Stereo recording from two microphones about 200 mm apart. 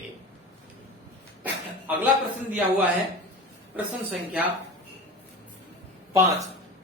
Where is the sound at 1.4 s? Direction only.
10° right (ahead or behind).